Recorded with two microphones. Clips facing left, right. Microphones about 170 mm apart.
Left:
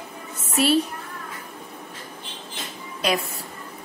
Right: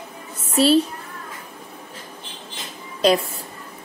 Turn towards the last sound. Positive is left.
turn(degrees=-30)  # may be behind; listen again after turning